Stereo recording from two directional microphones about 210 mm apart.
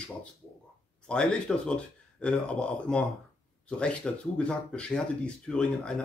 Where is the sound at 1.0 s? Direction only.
5° left (ahead or behind).